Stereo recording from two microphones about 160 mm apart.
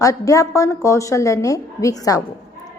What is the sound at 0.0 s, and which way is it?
A woman's voice, 20° left (ahead or behind).